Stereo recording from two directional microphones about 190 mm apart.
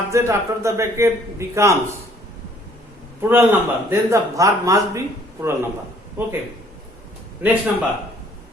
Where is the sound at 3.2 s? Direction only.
10° right (ahead or behind).